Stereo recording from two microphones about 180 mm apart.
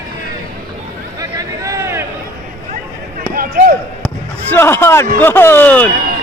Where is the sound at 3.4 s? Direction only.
55° right (ahead or behind).